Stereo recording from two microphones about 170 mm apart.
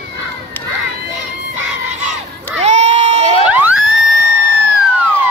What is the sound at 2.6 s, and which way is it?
Run, 40° right (ahead or behind).